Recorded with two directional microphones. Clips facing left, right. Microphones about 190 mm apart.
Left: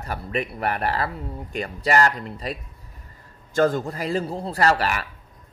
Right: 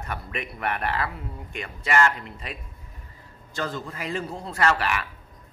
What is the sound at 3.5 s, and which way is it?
A man's voice, 50° left (ahead or behind).